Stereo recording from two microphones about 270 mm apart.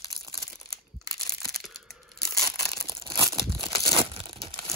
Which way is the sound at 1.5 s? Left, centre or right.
Centre.